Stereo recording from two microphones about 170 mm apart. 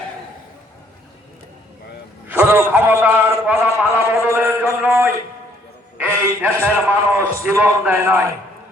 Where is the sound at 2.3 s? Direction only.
10° right (ahead or behind).